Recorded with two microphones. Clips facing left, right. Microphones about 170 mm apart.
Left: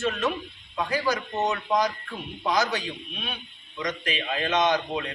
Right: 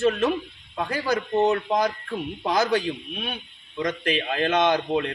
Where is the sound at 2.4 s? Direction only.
55° right (ahead or behind).